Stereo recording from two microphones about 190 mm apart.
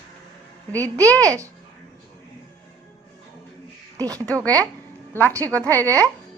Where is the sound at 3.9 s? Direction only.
20° right (ahead or behind).